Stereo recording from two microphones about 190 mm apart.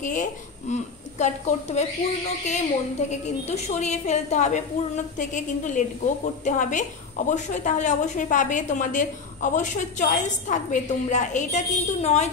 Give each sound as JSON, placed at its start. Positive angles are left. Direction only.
{"t": 0.0, "sound": "a woman's voice", "side_deg": 40}